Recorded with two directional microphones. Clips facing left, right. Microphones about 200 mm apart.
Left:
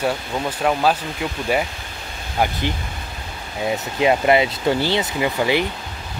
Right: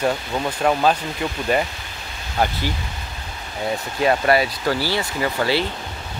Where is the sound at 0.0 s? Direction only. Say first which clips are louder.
Right 1 dB; 5° left (ahead or behind).